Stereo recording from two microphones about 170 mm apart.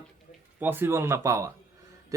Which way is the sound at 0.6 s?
10° right (ahead or behind).